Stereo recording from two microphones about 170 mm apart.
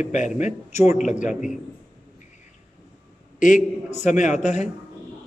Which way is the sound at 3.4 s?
50° left (ahead or behind).